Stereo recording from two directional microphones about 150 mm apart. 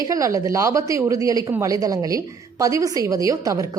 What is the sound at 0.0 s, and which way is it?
Speech, 20° right (ahead or behind).